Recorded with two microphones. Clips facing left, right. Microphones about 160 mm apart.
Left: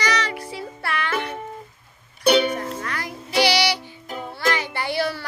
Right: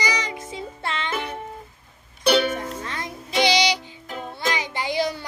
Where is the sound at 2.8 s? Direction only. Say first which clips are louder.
Left 2 dB; 20° right (ahead or behind).